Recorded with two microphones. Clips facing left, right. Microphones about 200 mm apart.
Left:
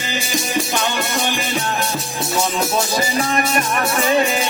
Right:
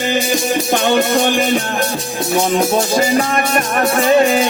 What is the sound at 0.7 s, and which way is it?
Music, 55° right (ahead or behind).